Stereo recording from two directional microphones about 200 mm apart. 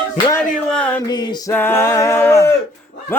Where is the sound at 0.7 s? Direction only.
5° left (ahead or behind).